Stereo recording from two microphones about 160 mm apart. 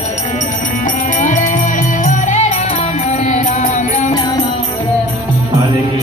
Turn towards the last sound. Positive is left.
turn(degrees=25)  # may be behind; listen again after turning